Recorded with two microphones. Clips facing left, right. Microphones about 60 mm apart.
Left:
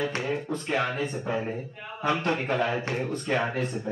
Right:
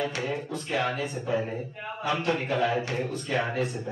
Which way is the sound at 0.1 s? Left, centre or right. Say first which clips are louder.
Left 2 dB; left.